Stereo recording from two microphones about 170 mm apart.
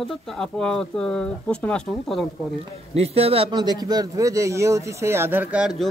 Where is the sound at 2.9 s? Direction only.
35° right (ahead or behind).